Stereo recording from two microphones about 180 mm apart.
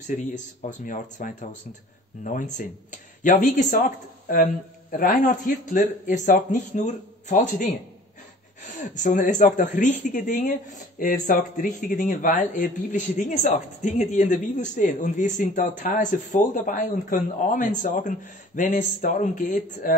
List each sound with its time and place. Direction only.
0.0 s speech: 40° left (ahead or behind)
8.9 s speech: 45° left (ahead or behind)